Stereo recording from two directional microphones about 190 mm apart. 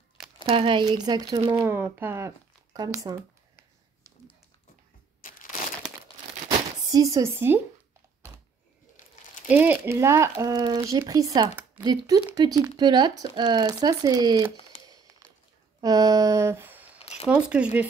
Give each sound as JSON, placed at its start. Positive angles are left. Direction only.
{"t": 0.5, "sound": "speech", "side_deg": -30}
{"t": 1.7, "sound": "speech", "side_deg": -10}
{"t": 6.9, "sound": "speech", "side_deg": -20}
{"t": 9.5, "sound": "speech", "side_deg": -10}
{"t": 15.8, "sound": "a sound", "side_deg": -20}
{"t": 17.3, "sound": "speech", "side_deg": -5}